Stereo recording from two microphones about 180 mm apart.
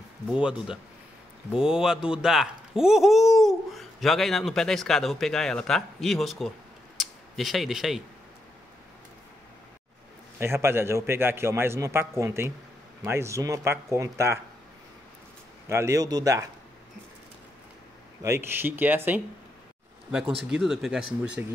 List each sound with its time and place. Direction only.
0.3 s speech: 5° right (ahead or behind)
10.4 s a man's voice: 15° right (ahead or behind)
15.7 s a man's voice: 15° right (ahead or behind)
18.2 s a man's voice: 15° right (ahead or behind)
20.5 s speech: centre (ahead or behind)